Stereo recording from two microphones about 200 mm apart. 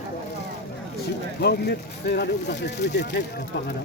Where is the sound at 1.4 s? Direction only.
55° left (ahead or behind).